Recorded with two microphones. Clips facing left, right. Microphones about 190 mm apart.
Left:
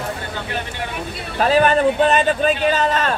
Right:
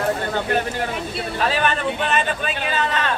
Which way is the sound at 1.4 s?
40° left (ahead or behind).